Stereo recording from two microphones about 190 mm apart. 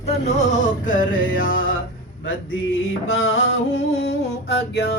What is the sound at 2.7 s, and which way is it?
Music, 90° left.